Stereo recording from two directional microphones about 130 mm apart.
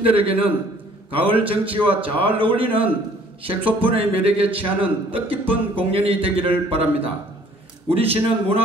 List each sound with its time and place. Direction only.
0.0 s a man's voice: 45° right (ahead or behind)